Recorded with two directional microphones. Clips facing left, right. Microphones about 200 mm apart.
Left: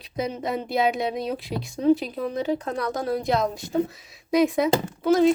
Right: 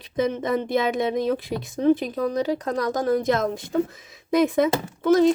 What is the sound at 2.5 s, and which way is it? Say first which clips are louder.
Speech: right 2 dB; 40° right (ahead or behind).